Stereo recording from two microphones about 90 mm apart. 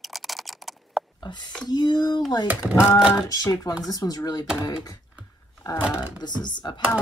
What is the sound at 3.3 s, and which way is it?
Speech, 45° left (ahead or behind).